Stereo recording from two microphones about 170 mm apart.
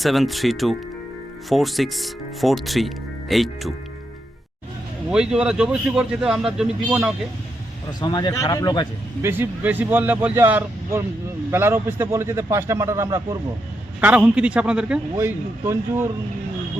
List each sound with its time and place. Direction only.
0.0 s speech: centre (ahead or behind)
5.1 s speech: 5° right (ahead or behind)
8.0 s speech: 25° left (ahead or behind)
9.2 s speech: 10° right (ahead or behind)
14.0 s speech: 10° right (ahead or behind)
15.1 s speech: 15° right (ahead or behind)